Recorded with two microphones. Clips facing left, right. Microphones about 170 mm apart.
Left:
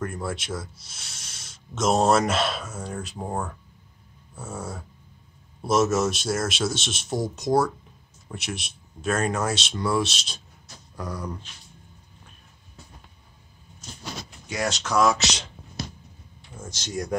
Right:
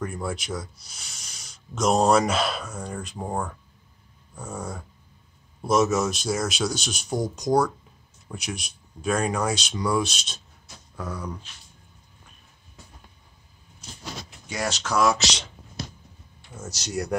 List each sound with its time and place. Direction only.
0.0 s speech: 5° left (ahead or behind)
14.5 s speech: centre (ahead or behind)
16.6 s speech: 75° right (ahead or behind)